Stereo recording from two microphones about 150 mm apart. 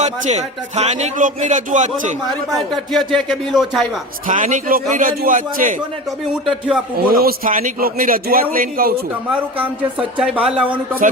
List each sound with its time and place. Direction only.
0.0 s speech: 50° right (ahead or behind)
2.9 s speech: centre (ahead or behind)
4.3 s a man's voice: 60° right (ahead or behind)
6.3 s speech: 5° right (ahead or behind)
7.1 s a man's voice: 75° right (ahead or behind)
10.2 s speech: 5° right (ahead or behind)